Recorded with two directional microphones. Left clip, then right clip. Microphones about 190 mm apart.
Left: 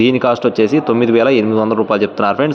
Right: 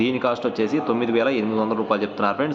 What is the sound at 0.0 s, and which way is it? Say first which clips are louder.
A man's voice: left 9 dB; 45° left (ahead or behind).